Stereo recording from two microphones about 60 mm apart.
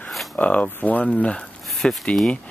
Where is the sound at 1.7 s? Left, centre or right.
Centre.